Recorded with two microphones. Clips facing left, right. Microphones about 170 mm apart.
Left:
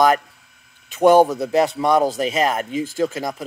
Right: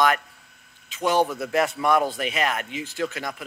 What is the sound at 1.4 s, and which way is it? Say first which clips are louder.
Speech: left 5 dB; 30° left (ahead or behind).